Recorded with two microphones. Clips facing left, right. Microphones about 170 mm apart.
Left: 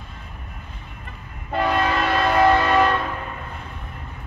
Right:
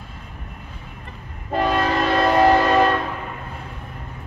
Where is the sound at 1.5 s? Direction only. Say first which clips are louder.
Right 1 dB; 40° right (ahead or behind).